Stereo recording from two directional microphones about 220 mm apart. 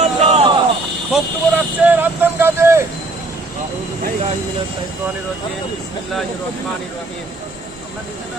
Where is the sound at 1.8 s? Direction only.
10° right (ahead or behind).